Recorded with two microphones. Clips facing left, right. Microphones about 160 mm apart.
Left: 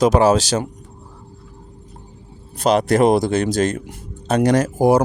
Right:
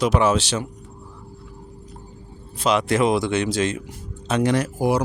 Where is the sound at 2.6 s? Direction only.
40° left (ahead or behind).